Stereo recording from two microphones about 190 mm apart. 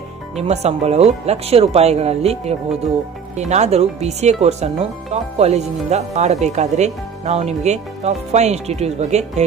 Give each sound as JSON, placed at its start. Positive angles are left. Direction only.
{"t": 0.4, "sound": "speech", "side_deg": -35}